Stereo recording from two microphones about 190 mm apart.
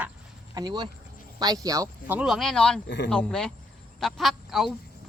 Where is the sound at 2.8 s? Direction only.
65° left (ahead or behind).